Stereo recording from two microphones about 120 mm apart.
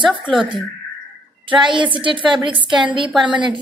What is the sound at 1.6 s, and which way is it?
A woman's voice, 40° right (ahead or behind).